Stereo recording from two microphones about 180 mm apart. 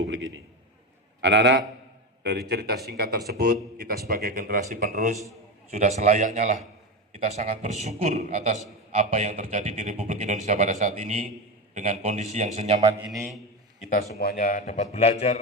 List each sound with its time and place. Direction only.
0.0 s a man's voice: 90° right
1.2 s a man's voice: 75° right (ahead or behind); by 12.8 s 40° right (ahead or behind)
14.2 s a man's voice: 55° left (ahead or behind); by 15.4 s 40° left (ahead or behind)